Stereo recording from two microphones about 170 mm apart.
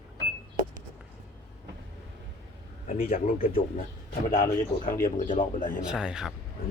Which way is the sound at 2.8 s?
55° left (ahead or behind).